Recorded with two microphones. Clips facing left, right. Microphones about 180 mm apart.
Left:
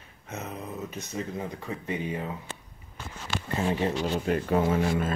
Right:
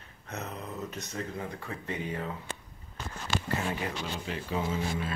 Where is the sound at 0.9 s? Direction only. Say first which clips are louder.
Left 3 dB; 15° left (ahead or behind).